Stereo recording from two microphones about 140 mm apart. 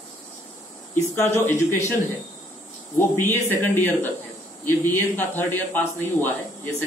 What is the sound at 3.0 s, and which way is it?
Speech, 15° left (ahead or behind).